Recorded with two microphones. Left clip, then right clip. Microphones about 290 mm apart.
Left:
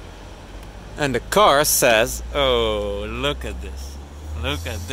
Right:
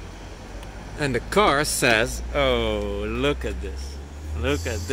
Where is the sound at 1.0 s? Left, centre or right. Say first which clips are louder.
Left 4 dB; centre.